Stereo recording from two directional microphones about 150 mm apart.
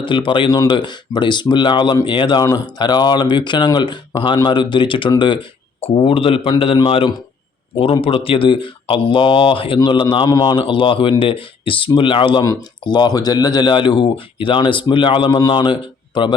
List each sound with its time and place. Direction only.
0.0 s speech: 35° left (ahead or behind)